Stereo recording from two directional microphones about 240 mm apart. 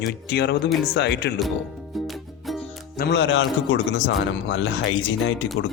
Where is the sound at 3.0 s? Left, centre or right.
Left.